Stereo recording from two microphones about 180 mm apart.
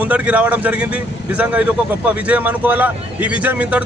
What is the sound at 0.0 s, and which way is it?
A man's voice, 10° right (ahead or behind).